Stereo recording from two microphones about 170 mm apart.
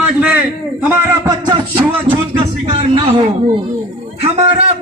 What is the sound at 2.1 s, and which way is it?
A man's voice, 30° right (ahead or behind).